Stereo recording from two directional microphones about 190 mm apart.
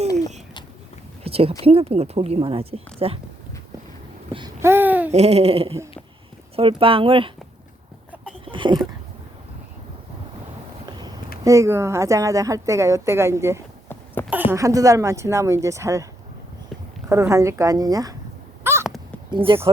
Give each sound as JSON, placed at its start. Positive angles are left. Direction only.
{"t": 0.2, "sound": "a sound", "side_deg": -35}
{"t": 1.6, "sound": "speech", "side_deg": -30}
{"t": 4.4, "sound": "babbling", "side_deg": -15}
{"t": 5.1, "sound": "speech", "side_deg": -35}
{"t": 8.4, "sound": "a sound", "side_deg": -25}
{"t": 11.4, "sound": "a woman's voice", "side_deg": -15}
{"t": 17.1, "sound": "a woman's voice", "side_deg": -15}
{"t": 18.6, "sound": "a sound", "side_deg": -10}
{"t": 19.4, "sound": "speech", "side_deg": -25}